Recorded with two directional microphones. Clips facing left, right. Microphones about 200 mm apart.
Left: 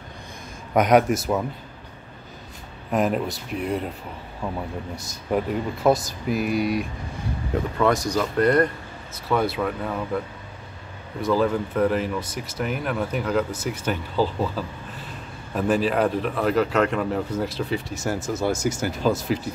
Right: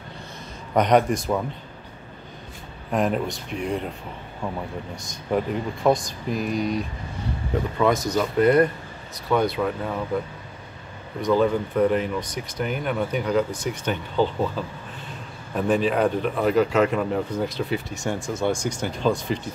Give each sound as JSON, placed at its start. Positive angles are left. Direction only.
{"t": 0.7, "sound": "speech", "side_deg": 5}
{"t": 2.9, "sound": "speech", "side_deg": 5}
{"t": 4.9, "sound": "speech", "side_deg": 5}
{"t": 11.1, "sound": "speech", "side_deg": 5}
{"t": 15.5, "sound": "speech", "side_deg": 0}